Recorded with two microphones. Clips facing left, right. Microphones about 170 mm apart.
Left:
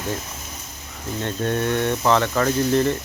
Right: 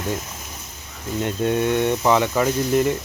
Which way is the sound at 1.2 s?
15° right (ahead or behind).